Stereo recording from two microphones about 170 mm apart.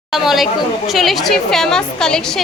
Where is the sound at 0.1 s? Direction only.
Centre (ahead or behind).